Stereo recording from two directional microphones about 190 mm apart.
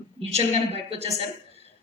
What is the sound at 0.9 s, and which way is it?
Speech, 30° right (ahead or behind).